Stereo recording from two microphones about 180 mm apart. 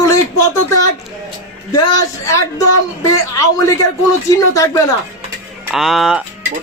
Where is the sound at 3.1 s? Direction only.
20° left (ahead or behind).